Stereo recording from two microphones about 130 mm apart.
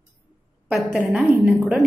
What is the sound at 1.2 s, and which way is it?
Speech, 15° right (ahead or behind).